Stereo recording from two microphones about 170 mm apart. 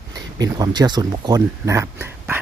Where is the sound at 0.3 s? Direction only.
20° right (ahead or behind).